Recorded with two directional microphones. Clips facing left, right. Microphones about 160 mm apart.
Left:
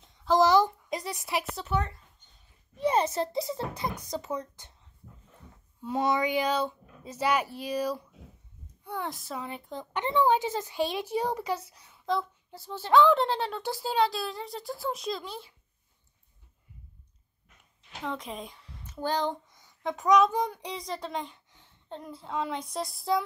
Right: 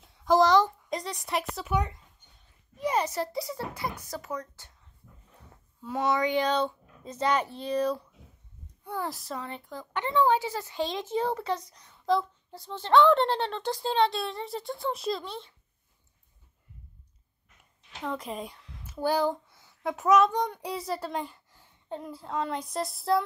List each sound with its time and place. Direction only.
0.4 s speech: 5° left (ahead or behind)
1.7 s speech: 15° right (ahead or behind)
2.8 s speech: 25° left (ahead or behind)
5.8 s speech: 15° left (ahead or behind)
8.8 s a woman's voice: centre (ahead or behind)
9.7 s speech: 20° left (ahead or behind); by 15.5 s 5° left (ahead or behind)
18.0 s a woman's voice: centre (ahead or behind)
20.6 s a woman's voice: 5° right (ahead or behind)